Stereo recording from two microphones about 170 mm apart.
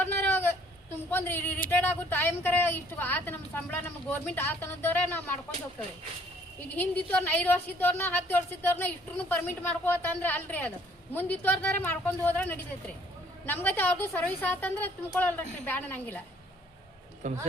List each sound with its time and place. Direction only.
0.2 s a sound: 15° left (ahead or behind)
2.0 s a woman's voice: 10° left (ahead or behind)
6.7 s a woman's voice: 10° left (ahead or behind)
17.2 s speech: 45° right (ahead or behind)